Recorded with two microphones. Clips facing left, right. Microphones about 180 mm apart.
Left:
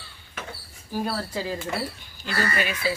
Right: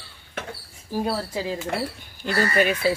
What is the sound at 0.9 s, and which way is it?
Speech, 20° right (ahead or behind).